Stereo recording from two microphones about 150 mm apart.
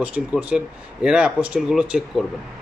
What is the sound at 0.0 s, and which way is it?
A man's voice, 10° right (ahead or behind).